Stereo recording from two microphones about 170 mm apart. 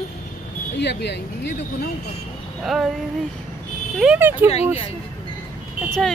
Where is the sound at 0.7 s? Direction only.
85° left.